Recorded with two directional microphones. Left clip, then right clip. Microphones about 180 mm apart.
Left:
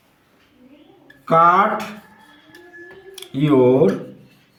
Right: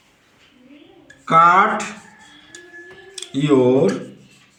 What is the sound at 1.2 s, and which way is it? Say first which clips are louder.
Speech: right 1 dB; 50° left (ahead or behind).